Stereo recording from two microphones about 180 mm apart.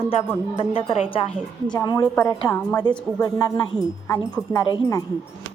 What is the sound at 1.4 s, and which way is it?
Speech, 5° left (ahead or behind).